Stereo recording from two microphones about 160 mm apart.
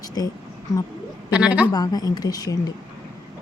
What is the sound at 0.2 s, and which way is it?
Speech, 25° left (ahead or behind).